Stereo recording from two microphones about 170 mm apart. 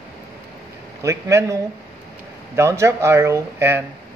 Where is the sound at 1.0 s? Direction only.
15° right (ahead or behind).